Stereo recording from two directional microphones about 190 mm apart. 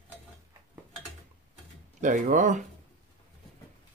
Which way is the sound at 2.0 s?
40° right (ahead or behind).